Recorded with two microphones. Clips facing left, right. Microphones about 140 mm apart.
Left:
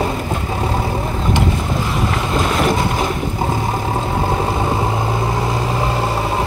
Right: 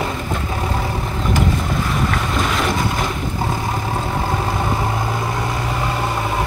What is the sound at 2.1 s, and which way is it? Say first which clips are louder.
Boat: left 2 dB; 25° left (ahead or behind).